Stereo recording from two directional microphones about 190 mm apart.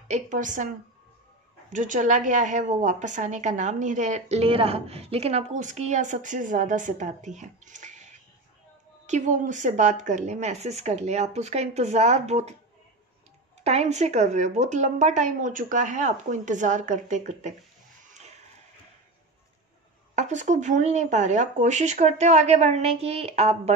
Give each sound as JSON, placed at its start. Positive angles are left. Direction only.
{"t": 0.1, "sound": "a woman's voice", "side_deg": -40}
{"t": 1.7, "sound": "a woman's voice", "side_deg": -40}
{"t": 9.0, "sound": "a woman's voice", "side_deg": -40}
{"t": 13.7, "sound": "a woman's voice", "side_deg": -35}
{"t": 20.2, "sound": "a woman's voice", "side_deg": -40}